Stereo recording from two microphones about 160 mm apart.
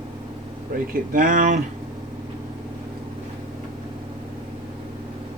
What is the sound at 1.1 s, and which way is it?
Speech, 55° right (ahead or behind).